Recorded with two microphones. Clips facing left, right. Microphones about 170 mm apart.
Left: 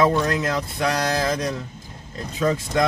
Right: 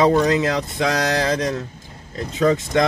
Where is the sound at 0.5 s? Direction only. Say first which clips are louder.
Right 2 dB; 85° right.